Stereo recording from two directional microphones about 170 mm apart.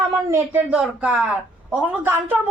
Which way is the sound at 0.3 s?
15° right (ahead or behind).